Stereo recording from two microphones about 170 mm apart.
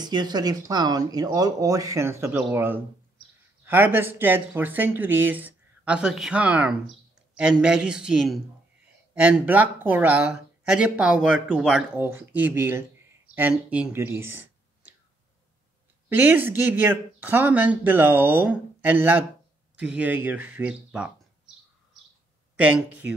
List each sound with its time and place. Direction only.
0.0 s speech: 25° right (ahead or behind)
16.1 s speech: 10° right (ahead or behind)
22.6 s speech: 10° right (ahead or behind)